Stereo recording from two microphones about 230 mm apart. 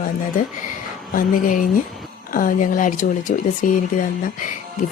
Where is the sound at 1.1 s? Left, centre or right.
Left.